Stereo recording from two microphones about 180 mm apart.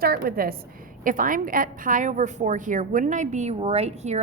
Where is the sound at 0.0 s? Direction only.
55° right (ahead or behind).